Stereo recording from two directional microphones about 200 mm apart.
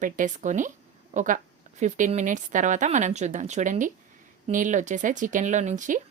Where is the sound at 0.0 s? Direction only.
40° right (ahead or behind).